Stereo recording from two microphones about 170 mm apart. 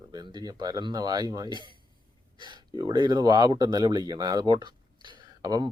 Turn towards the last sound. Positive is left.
turn(degrees=-25)  # may be behind; listen again after turning